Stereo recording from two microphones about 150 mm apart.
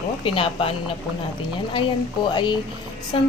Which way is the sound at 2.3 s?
30° left (ahead or behind).